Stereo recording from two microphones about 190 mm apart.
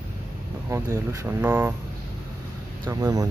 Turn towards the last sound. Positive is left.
turn(degrees=-20)  # may be behind; listen again after turning